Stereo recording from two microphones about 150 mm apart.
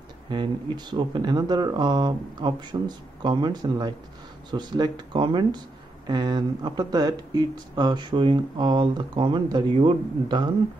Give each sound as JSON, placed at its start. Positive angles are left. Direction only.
{"t": 0.3, "sound": "speech", "side_deg": -30}